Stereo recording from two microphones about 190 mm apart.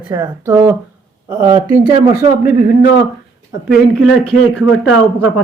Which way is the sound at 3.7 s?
Centre (ahead or behind).